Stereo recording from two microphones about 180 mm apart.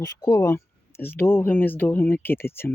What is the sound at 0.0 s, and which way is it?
Speech, 20° left (ahead or behind).